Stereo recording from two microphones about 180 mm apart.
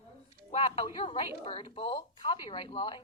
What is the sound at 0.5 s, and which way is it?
Speech, 30° left (ahead or behind).